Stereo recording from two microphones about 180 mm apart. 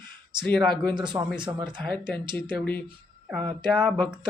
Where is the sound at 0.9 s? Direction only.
25° right (ahead or behind).